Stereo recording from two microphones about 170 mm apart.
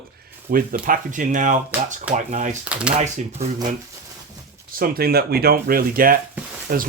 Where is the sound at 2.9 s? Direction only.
40° right (ahead or behind).